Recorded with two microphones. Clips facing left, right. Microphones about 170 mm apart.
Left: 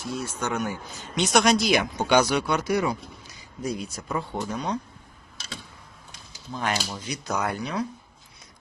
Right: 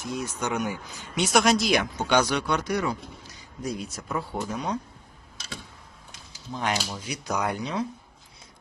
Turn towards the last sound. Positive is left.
turn(degrees=-20)  # may be behind; listen again after turning